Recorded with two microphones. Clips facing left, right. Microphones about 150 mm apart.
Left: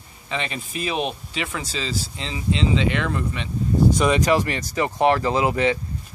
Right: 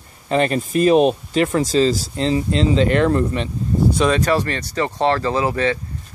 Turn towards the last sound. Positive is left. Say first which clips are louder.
# right 1 dB
turn(degrees=15)  # may be behind; listen again after turning